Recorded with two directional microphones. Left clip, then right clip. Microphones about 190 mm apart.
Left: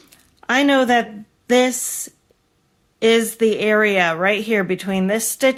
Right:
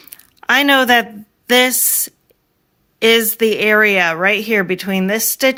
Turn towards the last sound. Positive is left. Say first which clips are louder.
# right 2 dB
turn(degrees=-35)  # may be behind; listen again after turning